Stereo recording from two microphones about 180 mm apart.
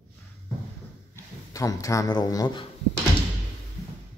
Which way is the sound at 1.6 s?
20° left (ahead or behind).